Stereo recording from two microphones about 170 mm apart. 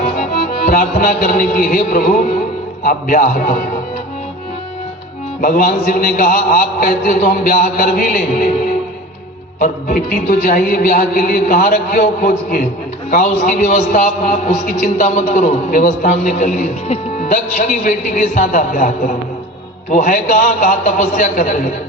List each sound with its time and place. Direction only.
0.3 s music: 60° left (ahead or behind)
2.8 s a man's voice: 55° left (ahead or behind)
5.4 s a man's voice: 55° left (ahead or behind)
9.6 s a man's voice: 55° left (ahead or behind)